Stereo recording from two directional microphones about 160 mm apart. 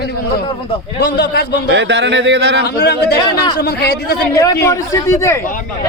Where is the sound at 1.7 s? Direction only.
90° right.